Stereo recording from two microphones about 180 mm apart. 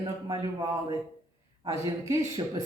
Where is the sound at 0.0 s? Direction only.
20° right (ahead or behind).